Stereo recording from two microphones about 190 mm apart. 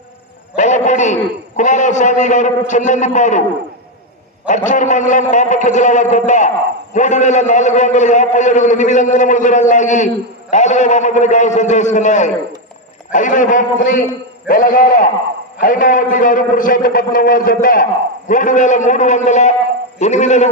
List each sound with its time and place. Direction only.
0.6 s a sound: 40° left (ahead or behind)
1.6 s a man's voice: 40° left (ahead or behind)
4.5 s a man's voice: 40° left (ahead or behind)